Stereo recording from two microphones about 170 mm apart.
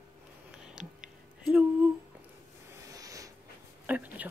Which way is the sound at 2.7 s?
20° right (ahead or behind).